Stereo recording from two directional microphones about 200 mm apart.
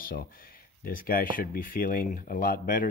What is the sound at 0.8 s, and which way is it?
Speech, 45° left (ahead or behind).